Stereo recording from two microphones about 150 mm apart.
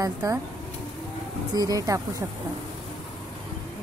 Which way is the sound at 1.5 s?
25° right (ahead or behind).